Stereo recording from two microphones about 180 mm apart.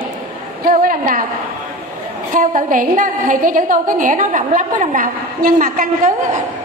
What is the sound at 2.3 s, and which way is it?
A woman's voice, 50° right (ahead or behind).